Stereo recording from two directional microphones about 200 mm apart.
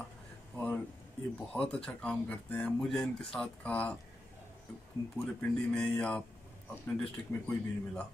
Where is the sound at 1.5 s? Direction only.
5° left (ahead or behind).